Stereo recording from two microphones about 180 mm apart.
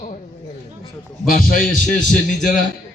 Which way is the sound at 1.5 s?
45° left (ahead or behind).